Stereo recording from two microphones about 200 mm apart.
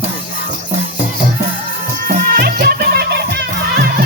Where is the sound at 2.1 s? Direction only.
50° right (ahead or behind).